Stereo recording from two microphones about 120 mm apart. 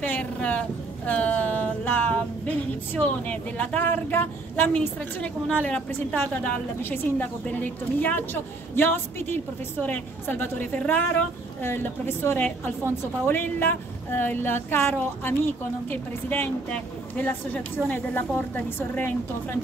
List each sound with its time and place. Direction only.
0.0 s speech: 10° left (ahead or behind)